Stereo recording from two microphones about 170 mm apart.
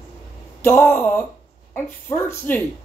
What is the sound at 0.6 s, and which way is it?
Speech, 15° left (ahead or behind).